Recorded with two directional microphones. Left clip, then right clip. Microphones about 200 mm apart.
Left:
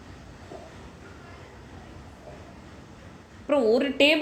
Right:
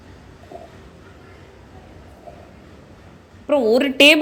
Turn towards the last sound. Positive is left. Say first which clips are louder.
# right 8 dB
turn(degrees=-30)  # may be behind; listen again after turning